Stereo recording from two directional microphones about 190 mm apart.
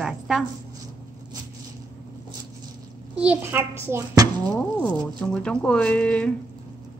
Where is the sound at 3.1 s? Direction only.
5° right (ahead or behind).